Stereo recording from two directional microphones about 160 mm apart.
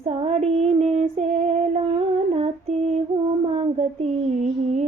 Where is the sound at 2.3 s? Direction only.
40° right (ahead or behind).